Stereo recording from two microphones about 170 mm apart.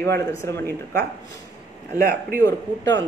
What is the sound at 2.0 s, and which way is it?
Speech, 60° right (ahead or behind).